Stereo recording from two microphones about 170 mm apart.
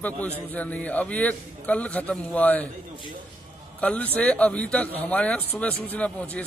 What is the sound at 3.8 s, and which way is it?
A man's voice, 5° left (ahead or behind).